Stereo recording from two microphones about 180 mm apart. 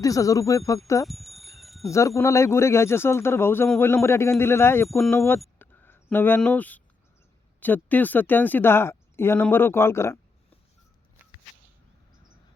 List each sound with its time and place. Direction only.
0.0 s speech: 20° left (ahead or behind)
1.0 s chime: centre (ahead or behind)
1.9 s speech: 15° left (ahead or behind)
4.9 s speech: 5° left (ahead or behind)
5.5 s a sound: 10° left (ahead or behind)
7.6 s speech: 10° left (ahead or behind)